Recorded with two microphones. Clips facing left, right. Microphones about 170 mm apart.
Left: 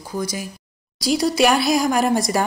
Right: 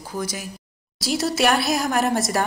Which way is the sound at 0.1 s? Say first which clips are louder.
Left 3 dB; 5° right (ahead or behind).